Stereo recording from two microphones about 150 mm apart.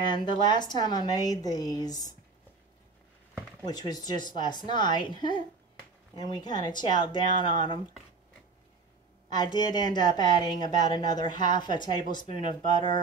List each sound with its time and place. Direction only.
0.0 s a woman's voice: 30° left (ahead or behind)
3.6 s a woman's voice: 25° left (ahead or behind)
9.3 s a woman's voice: 30° left (ahead or behind)